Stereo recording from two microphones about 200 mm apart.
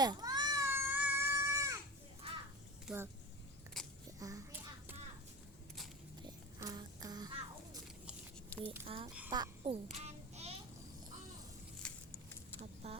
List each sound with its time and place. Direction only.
0.0 s goat: 20° right (ahead or behind)
2.2 s crow: 30° right (ahead or behind)
2.9 s speech: 5° right (ahead or behind)
3.8 s biting: centre (ahead or behind)
4.2 s a sound: 15° right (ahead or behind)
6.2 s music: 20° right (ahead or behind)
9.3 s a child's voice: 20° right (ahead or behind)
10.0 s child singing: 35° right (ahead or behind)
11.8 s a sound: 10° left (ahead or behind)
12.8 s a sound: 30° right (ahead or behind)